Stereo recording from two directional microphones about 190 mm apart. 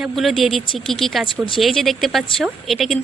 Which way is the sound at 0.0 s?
Centre (ahead or behind).